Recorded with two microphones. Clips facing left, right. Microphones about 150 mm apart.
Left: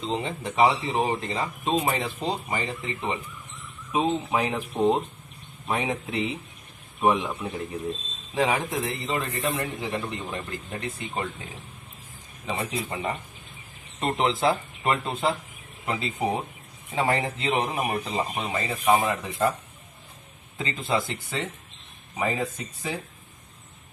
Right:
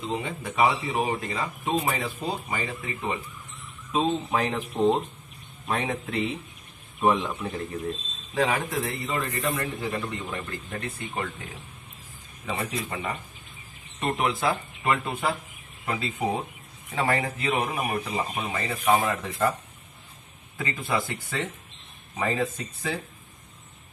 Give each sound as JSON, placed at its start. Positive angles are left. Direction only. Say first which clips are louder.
{"t": 0.0, "sound": "speech", "louder": "left 2 dB", "side_deg": 25}
{"t": 20.5, "sound": "speech", "louder": "left 1 dB", "side_deg": 20}